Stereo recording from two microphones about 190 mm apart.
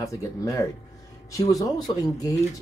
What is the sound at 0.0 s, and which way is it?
Speech, 15° left (ahead or behind).